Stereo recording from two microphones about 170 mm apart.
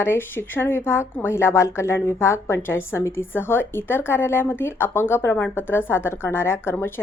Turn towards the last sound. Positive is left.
turn(degrees=15)  # may be behind; listen again after turning